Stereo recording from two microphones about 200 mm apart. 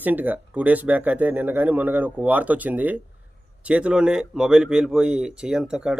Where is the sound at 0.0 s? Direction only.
10° right (ahead or behind).